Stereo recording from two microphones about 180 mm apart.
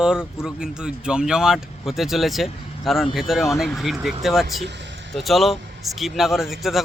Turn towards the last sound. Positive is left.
turn(degrees=0)  # may be behind; listen again after turning